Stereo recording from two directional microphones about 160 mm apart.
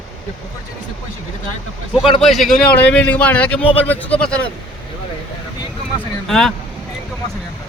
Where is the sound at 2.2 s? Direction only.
Centre (ahead or behind).